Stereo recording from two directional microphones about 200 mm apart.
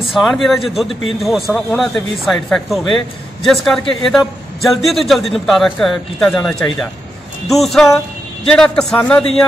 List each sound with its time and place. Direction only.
0.1 s a man's voice: centre (ahead or behind)